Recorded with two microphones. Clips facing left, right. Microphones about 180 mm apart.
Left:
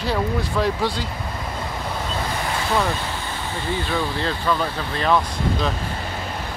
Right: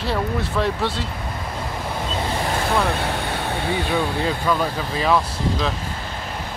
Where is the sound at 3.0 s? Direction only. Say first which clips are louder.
Right 5 dB; 65° right (ahead or behind).